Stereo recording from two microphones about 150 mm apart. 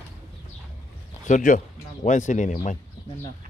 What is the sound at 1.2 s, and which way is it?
Speech, 55° left (ahead or behind).